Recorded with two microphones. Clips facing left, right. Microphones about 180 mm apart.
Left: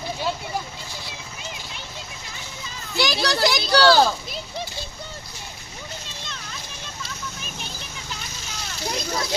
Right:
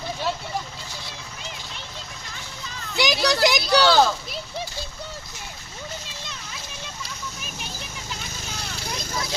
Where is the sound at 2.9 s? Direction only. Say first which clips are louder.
Right 1 dB; 15° right (ahead or behind).